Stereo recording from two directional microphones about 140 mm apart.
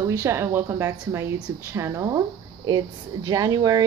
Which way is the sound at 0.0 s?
20° right (ahead or behind).